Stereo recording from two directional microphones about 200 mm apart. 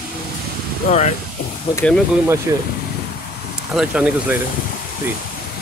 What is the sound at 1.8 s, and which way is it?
Speech, 5° left (ahead or behind).